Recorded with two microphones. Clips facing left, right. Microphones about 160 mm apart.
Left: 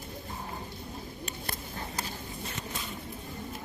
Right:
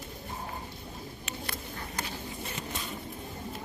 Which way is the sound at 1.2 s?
35° left (ahead or behind).